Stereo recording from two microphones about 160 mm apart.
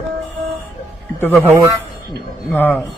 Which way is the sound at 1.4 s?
20° right (ahead or behind).